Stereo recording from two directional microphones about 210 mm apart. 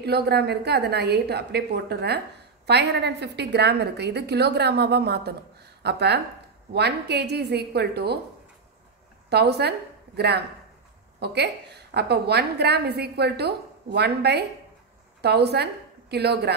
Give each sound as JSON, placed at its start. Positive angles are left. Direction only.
{"t": 0.0, "sound": "a woman's voice", "side_deg": -50}
{"t": 9.3, "sound": "a woman's voice", "side_deg": -50}